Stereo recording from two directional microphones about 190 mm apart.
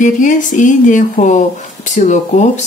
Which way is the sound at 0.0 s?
40° left (ahead or behind).